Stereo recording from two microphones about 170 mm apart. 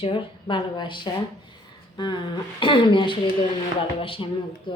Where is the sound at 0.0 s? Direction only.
30° left (ahead or behind).